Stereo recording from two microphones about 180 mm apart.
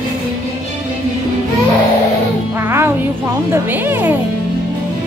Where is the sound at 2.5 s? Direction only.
15° right (ahead or behind).